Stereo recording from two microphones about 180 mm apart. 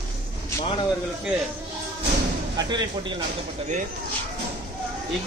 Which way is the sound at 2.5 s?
25° right (ahead or behind).